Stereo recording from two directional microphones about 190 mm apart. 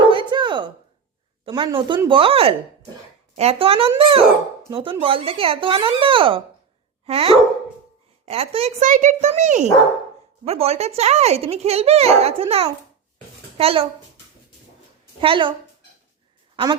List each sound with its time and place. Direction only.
0.1 s a sound: 25° right (ahead or behind)
1.5 s a child's voice: 25° right (ahead or behind)
15.2 s speech: 25° right (ahead or behind)